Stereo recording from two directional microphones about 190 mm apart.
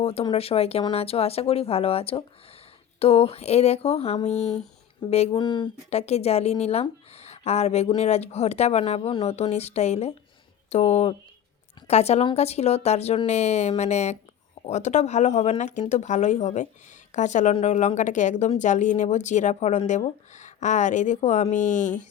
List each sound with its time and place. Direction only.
0.0 s speech: 30° left (ahead or behind)